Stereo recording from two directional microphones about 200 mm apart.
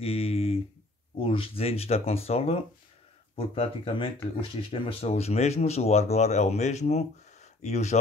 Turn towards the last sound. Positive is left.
turn(degrees=35)  # may be behind; listen again after turning